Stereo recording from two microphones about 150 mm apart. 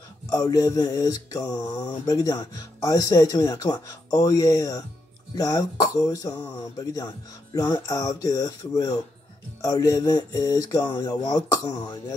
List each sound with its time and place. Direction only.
0.3 s speech: 25° left (ahead or behind)